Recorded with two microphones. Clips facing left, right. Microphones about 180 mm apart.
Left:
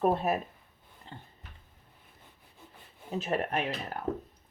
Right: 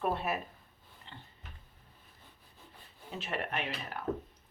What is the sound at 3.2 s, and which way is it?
Speech, 40° left (ahead or behind).